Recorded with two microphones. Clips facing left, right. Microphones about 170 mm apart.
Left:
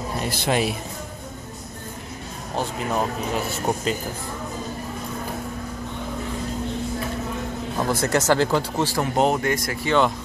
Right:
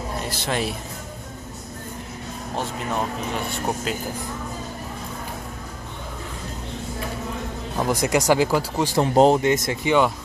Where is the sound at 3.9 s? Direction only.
5° right (ahead or behind).